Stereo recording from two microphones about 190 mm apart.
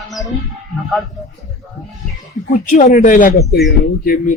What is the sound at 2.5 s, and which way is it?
Speech, 40° left (ahead or behind).